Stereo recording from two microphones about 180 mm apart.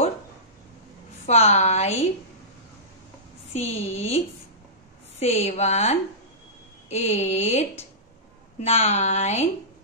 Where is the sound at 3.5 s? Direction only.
35° left (ahead or behind).